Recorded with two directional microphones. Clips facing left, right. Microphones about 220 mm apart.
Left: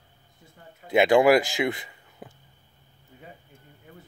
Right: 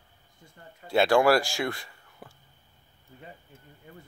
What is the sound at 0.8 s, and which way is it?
Speech, 20° left (ahead or behind).